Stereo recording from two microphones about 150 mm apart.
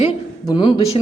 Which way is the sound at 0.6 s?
30° left (ahead or behind).